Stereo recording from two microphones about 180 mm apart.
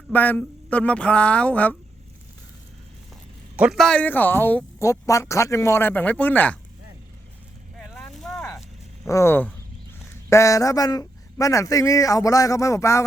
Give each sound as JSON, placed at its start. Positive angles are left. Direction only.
{"t": 0.1, "sound": "speech", "side_deg": 10}
{"t": 3.5, "sound": "speech", "side_deg": -5}
{"t": 7.8, "sound": "a sound", "side_deg": 5}
{"t": 9.0, "sound": "speech", "side_deg": 15}